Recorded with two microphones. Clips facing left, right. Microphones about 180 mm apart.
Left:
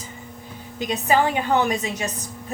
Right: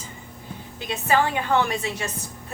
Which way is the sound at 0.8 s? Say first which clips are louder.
Left 2 dB; 15° left (ahead or behind).